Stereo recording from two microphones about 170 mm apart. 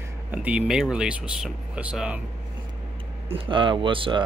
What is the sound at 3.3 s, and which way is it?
Speech, 30° right (ahead or behind).